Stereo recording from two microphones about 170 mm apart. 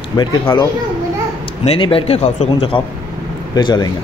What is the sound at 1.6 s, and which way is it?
Speech, 30° left (ahead or behind).